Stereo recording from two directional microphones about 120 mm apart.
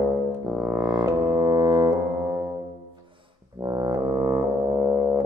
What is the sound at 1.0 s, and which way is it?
Music, 30° right (ahead or behind).